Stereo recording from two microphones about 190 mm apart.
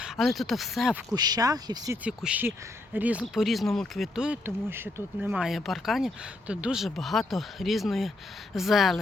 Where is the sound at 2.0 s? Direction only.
5° right (ahead or behind).